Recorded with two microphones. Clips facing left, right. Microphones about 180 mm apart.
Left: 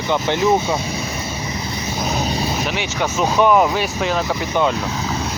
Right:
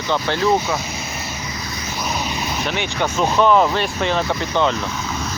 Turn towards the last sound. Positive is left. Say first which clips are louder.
# even
turn(degrees=5)  # may be behind; listen again after turning